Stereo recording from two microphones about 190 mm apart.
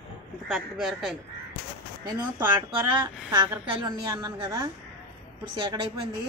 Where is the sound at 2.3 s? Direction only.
15° right (ahead or behind).